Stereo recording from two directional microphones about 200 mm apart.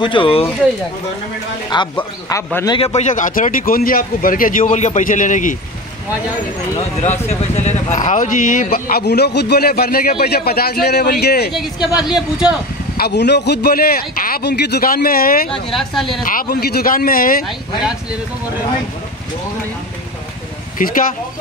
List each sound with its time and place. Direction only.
0.0 s speech: 25° left (ahead or behind)
2.0 s a man's voice: 15° left (ahead or behind)
2.8 s speech: 35° left (ahead or behind)
7.0 s speech: 35° left (ahead or behind); by 11.5 s 55° left (ahead or behind)
11.5 s speech: centre (ahead or behind)
12.9 s speech: 55° left (ahead or behind)
15.7 s speech: centre (ahead or behind)
16.3 s speech: 45° left (ahead or behind)
20.8 s speech: 45° left (ahead or behind)